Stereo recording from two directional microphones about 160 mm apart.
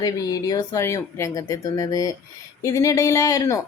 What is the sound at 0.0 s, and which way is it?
Speech, 25° left (ahead or behind).